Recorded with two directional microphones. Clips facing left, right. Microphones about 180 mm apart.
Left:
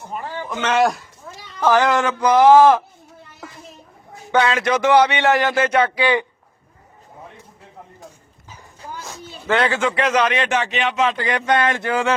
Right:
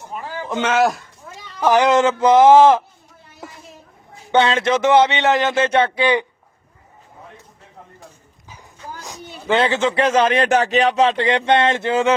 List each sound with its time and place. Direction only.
0.1 s a sound: centre (ahead or behind)
0.6 s a man's voice: centre (ahead or behind)
1.6 s a man's voice: 15° right (ahead or behind)
4.3 s a man's voice: 25° right (ahead or behind)
9.0 s a sound: 15° right (ahead or behind)
9.5 s a man's voice: 20° right (ahead or behind)